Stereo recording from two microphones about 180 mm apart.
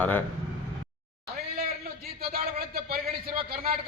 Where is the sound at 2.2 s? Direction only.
55° right (ahead or behind).